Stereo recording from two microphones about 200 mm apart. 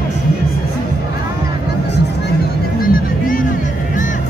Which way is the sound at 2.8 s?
45° left (ahead or behind).